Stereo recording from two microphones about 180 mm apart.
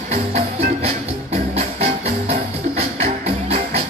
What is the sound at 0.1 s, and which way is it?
Music, 40° right (ahead or behind).